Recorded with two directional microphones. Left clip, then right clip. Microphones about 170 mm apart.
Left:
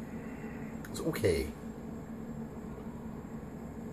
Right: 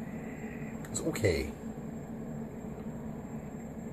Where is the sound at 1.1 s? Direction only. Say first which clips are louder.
Even; 10° left (ahead or behind).